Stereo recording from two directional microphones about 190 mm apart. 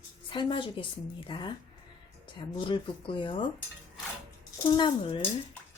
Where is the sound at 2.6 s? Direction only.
25° left (ahead or behind).